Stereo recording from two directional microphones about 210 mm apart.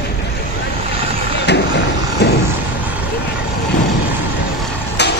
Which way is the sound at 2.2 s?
55° left (ahead or behind).